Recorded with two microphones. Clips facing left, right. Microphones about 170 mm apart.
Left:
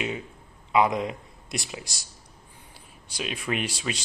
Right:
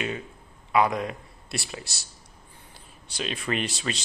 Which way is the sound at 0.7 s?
20° left (ahead or behind).